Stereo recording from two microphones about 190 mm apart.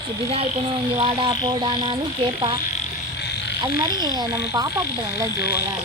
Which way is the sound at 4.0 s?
20° right (ahead or behind).